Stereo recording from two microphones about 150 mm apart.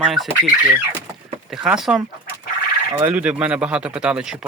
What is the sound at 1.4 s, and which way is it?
Speech, 5° right (ahead or behind).